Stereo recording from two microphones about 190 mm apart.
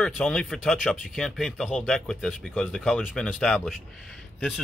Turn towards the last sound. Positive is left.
turn(degrees=0)  # may be behind; listen again after turning